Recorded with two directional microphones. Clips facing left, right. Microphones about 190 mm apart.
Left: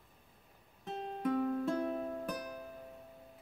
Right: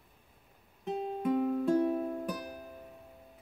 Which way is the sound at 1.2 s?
15° right (ahead or behind).